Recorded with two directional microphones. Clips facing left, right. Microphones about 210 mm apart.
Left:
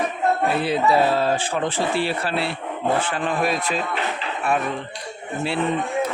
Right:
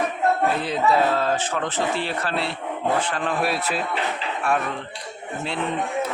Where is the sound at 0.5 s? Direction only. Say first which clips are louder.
Left 2 dB; 10° left (ahead or behind).